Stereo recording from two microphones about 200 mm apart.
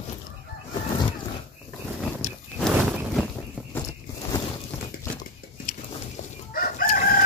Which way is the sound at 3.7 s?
15° left (ahead or behind).